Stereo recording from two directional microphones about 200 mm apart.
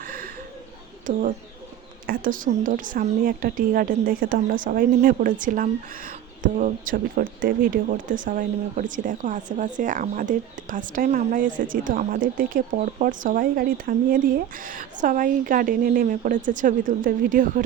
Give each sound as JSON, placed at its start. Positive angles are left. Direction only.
{"t": 0.0, "sound": "bird", "side_deg": -45}
{"t": 1.1, "sound": "a woman's voice", "side_deg": -40}